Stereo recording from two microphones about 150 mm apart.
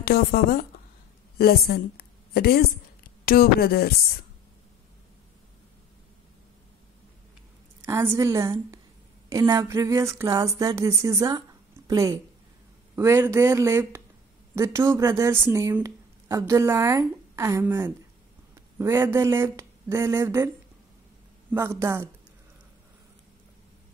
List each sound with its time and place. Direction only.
0.0 s a woman's voice: 90° left
7.8 s a woman's voice: 20° right (ahead or behind)